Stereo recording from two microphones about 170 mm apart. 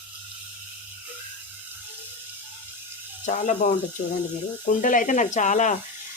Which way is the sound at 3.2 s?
45° left (ahead or behind).